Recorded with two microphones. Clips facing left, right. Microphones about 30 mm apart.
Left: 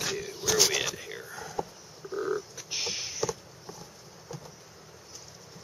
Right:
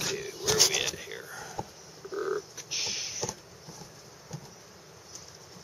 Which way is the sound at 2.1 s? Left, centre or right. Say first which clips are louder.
Left 1 dB; centre.